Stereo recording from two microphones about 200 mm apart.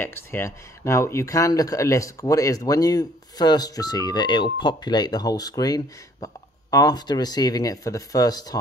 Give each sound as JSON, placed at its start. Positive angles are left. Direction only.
{"t": 0.0, "sound": "speech", "side_deg": 10}